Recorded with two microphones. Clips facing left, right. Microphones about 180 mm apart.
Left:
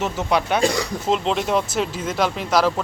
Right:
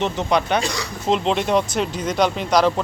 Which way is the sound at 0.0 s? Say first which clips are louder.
Right 1 dB; 5° left (ahead or behind).